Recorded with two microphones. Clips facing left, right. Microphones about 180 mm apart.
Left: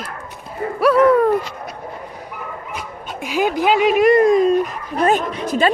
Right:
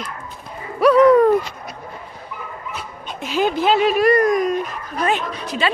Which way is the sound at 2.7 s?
10° left (ahead or behind).